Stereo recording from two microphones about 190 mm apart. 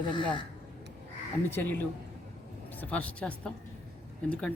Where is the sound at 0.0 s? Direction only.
25° left (ahead or behind).